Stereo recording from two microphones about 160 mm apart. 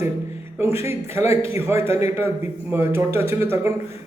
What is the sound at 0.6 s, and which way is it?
A man's voice, 15° right (ahead or behind).